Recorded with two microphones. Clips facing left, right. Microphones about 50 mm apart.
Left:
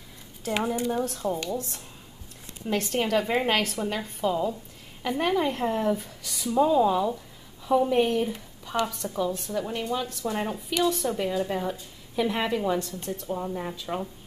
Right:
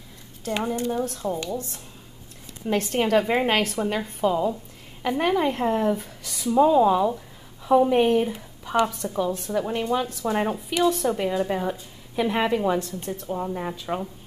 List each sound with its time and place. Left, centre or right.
0.5 s a woman's voice: centre
2.6 s speech: centre